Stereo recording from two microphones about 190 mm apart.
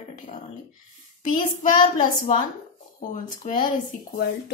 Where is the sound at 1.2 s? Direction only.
45° left (ahead or behind).